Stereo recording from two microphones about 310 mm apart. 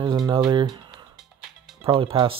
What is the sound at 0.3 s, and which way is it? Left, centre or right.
Speech, centre.